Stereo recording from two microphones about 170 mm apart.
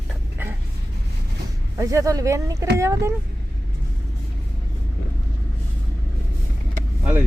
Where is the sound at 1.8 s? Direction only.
20° right (ahead or behind).